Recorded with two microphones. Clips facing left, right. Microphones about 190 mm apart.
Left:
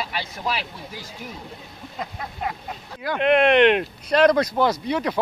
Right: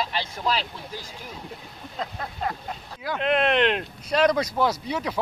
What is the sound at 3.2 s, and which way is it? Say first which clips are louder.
Speech: left 6 dB; 60° left (ahead or behind).